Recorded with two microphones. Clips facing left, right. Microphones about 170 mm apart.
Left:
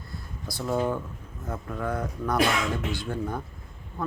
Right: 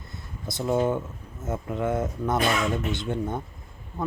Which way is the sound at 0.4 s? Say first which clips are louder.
Right 3 dB; 20° right (ahead or behind).